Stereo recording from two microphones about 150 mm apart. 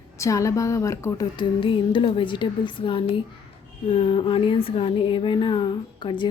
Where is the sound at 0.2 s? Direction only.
20° left (ahead or behind).